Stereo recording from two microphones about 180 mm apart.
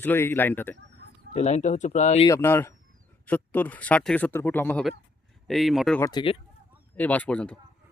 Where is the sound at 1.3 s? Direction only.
40° left (ahead or behind).